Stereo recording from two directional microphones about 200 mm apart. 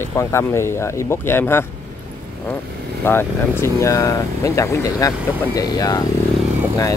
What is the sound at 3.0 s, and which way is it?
Speech, 10° left (ahead or behind).